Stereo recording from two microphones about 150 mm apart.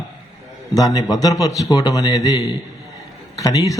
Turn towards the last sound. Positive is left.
turn(degrees=25)  # may be behind; listen again after turning